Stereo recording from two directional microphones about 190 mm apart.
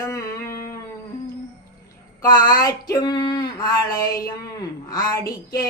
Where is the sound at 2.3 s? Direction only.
45° left (ahead or behind).